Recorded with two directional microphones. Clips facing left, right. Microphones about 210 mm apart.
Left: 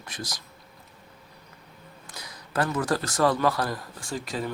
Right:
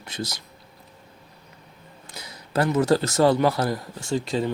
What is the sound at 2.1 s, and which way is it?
A man's voice, 25° right (ahead or behind).